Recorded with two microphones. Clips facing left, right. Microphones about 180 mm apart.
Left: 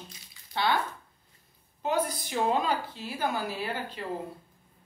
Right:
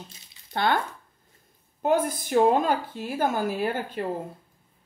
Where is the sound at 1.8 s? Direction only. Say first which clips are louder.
Right 5 dB; 50° right (ahead or behind).